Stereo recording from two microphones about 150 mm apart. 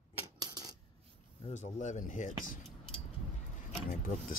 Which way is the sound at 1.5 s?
55° left (ahead or behind).